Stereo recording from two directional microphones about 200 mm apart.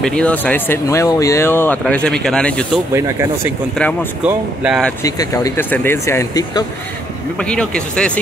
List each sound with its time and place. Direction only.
0.0 s speech: 5° left (ahead or behind)
2.9 s speech: 15° right (ahead or behind)
5.0 s speech: 15° left (ahead or behind)
7.3 s speech: 5° left (ahead or behind)